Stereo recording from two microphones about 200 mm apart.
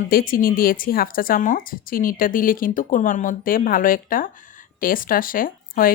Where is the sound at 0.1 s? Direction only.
45° left (ahead or behind).